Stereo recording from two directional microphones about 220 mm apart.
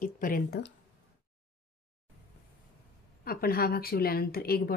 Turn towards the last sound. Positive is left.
turn(degrees=45)  # may be behind; listen again after turning